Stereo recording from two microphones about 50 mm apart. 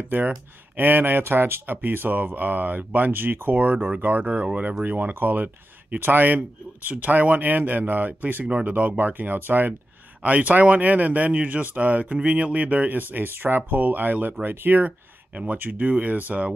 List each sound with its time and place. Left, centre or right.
0.1 s speech: right